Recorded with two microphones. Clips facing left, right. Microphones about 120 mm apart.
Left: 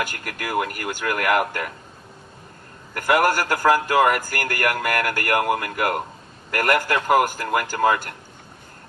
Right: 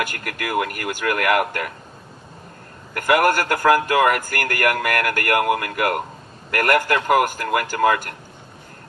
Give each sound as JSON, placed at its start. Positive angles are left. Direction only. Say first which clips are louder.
{"t": 0.0, "sound": "a man's voice", "louder": "right 2 dB", "side_deg": 25}
{"t": 2.9, "sound": "a man's voice", "louder": "right 2 dB", "side_deg": 25}